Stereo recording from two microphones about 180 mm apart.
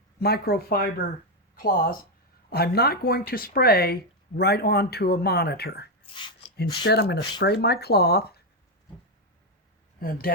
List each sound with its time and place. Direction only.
0.2 s speech: 60° left (ahead or behind)
6.1 s speech: 25° left (ahead or behind)
6.6 s speech: 65° left (ahead or behind)
10.0 s speech: 55° left (ahead or behind)